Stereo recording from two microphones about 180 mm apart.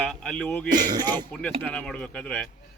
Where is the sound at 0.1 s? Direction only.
5° left (ahead or behind).